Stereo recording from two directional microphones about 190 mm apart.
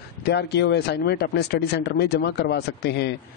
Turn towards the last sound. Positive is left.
turn(degrees=60)  # may be behind; listen again after turning